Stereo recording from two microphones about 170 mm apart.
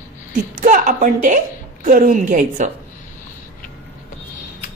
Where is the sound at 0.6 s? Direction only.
50° right (ahead or behind).